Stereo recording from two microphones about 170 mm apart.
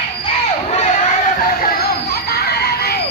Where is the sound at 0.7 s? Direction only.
45° left (ahead or behind); by 2.9 s 70° left (ahead or behind).